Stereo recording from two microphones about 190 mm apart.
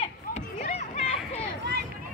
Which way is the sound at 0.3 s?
35° left (ahead or behind).